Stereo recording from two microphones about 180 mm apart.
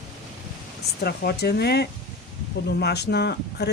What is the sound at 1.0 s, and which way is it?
Speech, 60° left (ahead or behind).